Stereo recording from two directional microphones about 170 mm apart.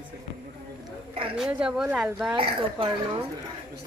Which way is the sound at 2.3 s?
30° right (ahead or behind).